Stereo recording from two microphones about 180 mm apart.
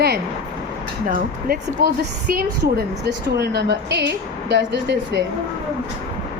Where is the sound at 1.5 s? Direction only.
65° right (ahead or behind).